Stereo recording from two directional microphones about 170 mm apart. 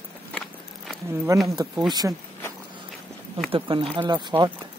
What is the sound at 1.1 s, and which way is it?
Speech, 15° right (ahead or behind).